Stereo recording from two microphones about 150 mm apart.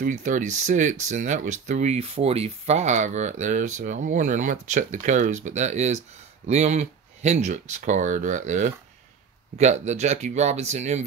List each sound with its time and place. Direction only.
0.0 s speech: 60° right (ahead or behind)